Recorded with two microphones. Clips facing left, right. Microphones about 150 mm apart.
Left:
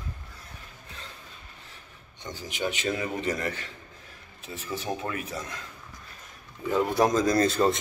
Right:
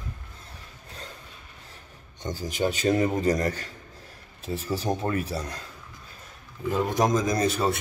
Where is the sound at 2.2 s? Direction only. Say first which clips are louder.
Right 5 dB; 45° right (ahead or behind).